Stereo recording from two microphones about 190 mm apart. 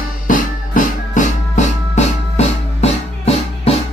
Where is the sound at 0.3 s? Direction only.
45° left (ahead or behind).